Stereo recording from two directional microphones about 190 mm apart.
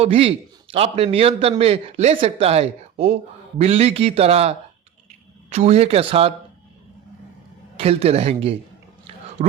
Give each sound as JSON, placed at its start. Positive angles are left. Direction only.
{"t": 0.0, "sound": "a man's voice", "side_deg": -30}
{"t": 7.8, "sound": "a man's voice", "side_deg": -30}
{"t": 9.0, "sound": "a sound", "side_deg": -35}